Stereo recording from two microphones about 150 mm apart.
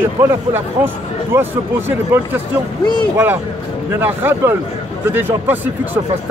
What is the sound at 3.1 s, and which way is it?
Speech, 15° right (ahead or behind).